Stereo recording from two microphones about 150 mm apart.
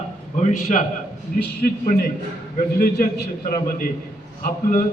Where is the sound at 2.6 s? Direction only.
65° left (ahead or behind).